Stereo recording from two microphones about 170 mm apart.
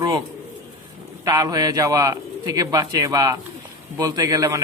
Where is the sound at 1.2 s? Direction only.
20° right (ahead or behind).